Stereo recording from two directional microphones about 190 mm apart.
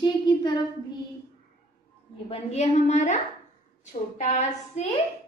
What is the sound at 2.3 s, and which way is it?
Child singing, 35° left (ahead or behind).